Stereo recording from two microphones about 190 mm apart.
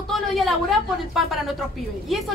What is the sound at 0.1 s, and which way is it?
A woman's voice, centre (ahead or behind).